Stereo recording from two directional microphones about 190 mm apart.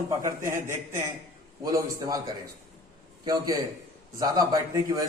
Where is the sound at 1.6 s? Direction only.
20° right (ahead or behind).